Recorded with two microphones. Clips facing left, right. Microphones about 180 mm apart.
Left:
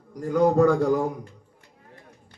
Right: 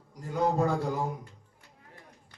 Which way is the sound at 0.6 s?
80° left.